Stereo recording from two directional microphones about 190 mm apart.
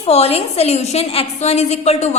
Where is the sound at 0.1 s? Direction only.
35° left (ahead or behind).